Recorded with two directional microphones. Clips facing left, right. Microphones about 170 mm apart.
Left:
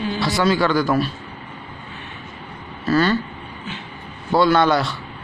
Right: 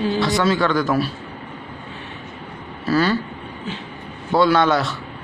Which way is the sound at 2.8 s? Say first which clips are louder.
Left 1 dB; 5° right (ahead or behind).